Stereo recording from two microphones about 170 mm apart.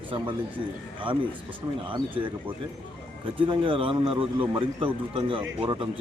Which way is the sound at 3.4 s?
30° right (ahead or behind).